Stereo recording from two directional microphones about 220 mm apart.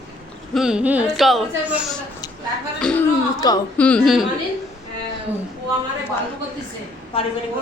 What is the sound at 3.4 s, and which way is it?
Speech, 15° left (ahead or behind).